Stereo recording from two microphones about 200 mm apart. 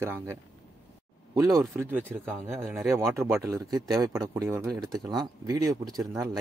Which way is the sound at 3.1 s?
15° right (ahead or behind).